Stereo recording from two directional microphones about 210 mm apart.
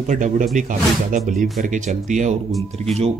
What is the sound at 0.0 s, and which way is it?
Speech, 35° right (ahead or behind).